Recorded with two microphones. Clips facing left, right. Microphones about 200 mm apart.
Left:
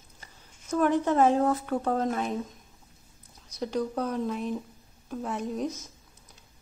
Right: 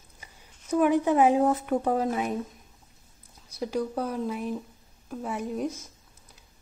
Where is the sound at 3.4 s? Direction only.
5° right (ahead or behind).